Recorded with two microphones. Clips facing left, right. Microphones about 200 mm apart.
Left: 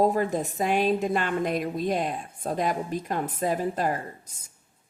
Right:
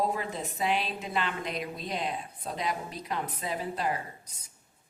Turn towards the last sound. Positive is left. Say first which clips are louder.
# left 6 dB
turn(degrees=50)  # may be behind; listen again after turning